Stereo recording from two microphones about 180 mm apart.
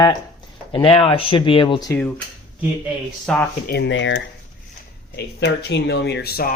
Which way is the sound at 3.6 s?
65° left (ahead or behind).